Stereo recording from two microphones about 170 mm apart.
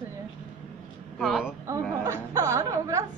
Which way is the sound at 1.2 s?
Centre (ahead or behind).